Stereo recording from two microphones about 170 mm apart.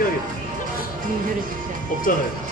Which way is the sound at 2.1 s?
55° left (ahead or behind).